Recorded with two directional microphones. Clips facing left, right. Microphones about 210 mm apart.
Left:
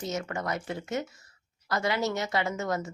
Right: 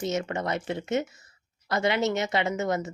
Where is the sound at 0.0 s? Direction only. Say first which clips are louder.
Right 4 dB; 20° right (ahead or behind).